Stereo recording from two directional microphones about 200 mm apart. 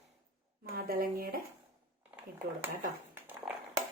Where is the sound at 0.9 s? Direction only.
45° right (ahead or behind).